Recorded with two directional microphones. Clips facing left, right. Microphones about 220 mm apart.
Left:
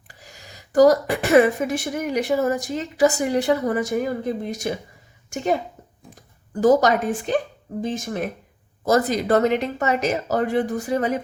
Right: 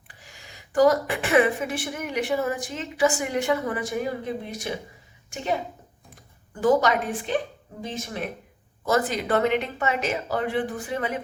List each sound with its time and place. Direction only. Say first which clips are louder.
0.1 s a woman's voice: left 4 dB; 40° left (ahead or behind)
6.5 s a woman's voice: left 4 dB; 40° left (ahead or behind)